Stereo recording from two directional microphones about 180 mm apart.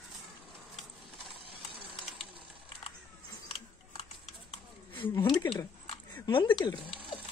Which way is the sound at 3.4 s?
30° left (ahead or behind).